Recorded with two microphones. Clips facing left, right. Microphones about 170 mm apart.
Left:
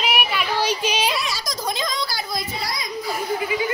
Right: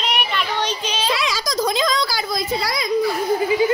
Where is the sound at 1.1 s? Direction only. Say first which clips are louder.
Right 4 dB; 90° right; by 2.8 s 75° right (ahead or behind).